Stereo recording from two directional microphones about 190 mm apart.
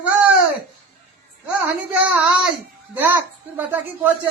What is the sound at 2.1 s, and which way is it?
Child singing, 5° right (ahead or behind).